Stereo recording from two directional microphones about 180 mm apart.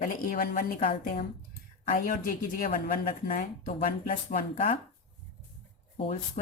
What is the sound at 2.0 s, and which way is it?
Speech, 50° left (ahead or behind).